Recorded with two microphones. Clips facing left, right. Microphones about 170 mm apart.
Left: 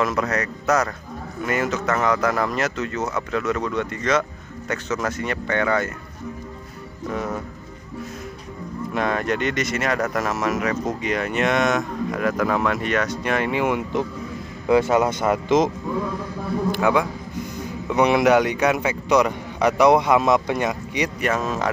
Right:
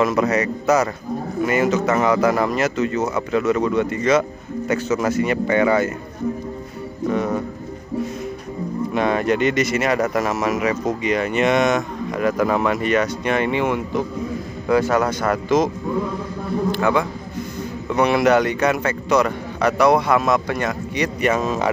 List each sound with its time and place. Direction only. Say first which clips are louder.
0.0 s speech: right 5 dB; 5° right (ahead or behind)
8.9 s speech: right 4 dB; centre (ahead or behind); by 15.7 s 20° left (ahead or behind)
16.7 s speech: left 2 dB; 10° left (ahead or behind)
21.2 s speech: right 5 dB; centre (ahead or behind)